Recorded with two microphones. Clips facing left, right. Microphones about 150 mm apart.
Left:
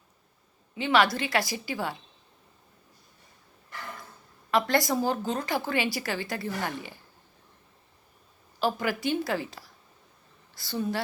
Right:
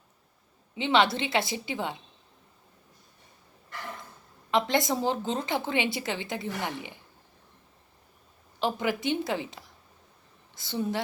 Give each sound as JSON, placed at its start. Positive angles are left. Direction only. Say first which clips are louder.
{"t": 0.8, "sound": "a woman's voice", "louder": "even", "side_deg": -25}
{"t": 4.5, "sound": "a woman's voice", "louder": "left 1 dB", "side_deg": -20}
{"t": 8.5, "sound": "a woman's voice", "louder": "even", "side_deg": -20}